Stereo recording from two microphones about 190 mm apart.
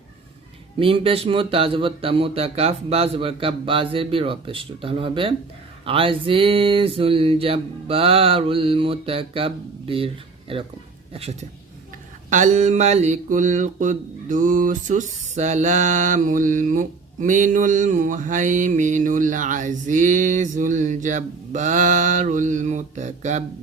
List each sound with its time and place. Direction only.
0.8 s speech: 30° right (ahead or behind)
12.3 s mantra: 40° right (ahead or behind)